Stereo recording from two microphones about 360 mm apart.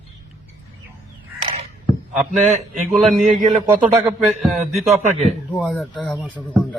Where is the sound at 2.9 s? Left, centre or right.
Centre.